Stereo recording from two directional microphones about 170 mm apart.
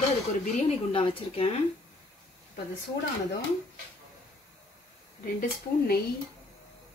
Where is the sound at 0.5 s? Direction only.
30° left (ahead or behind).